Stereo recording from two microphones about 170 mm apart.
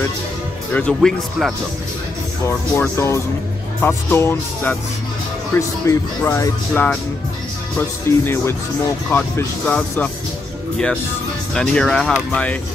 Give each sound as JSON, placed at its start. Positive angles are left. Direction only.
{"t": 0.7, "sound": "speech", "side_deg": 5}
{"t": 8.1, "sound": "speech", "side_deg": 15}
{"t": 11.5, "sound": "speech", "side_deg": 5}